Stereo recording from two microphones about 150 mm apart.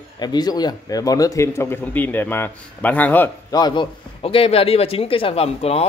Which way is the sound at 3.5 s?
30° left (ahead or behind).